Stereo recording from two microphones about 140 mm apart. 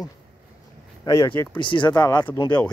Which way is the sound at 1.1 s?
25° left (ahead or behind).